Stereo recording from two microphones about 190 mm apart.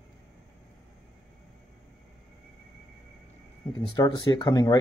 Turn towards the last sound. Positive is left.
turn(degrees=20)  # may be behind; listen again after turning